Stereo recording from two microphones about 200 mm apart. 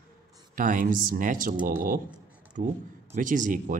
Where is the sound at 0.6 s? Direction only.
40° right (ahead or behind).